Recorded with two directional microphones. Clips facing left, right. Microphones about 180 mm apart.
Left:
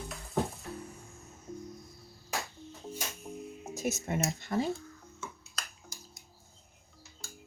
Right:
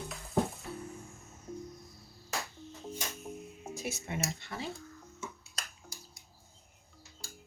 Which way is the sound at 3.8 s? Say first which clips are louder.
Left 5 dB; 45° left (ahead or behind).